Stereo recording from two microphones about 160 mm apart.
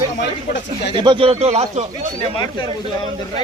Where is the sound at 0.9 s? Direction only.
30° right (ahead or behind).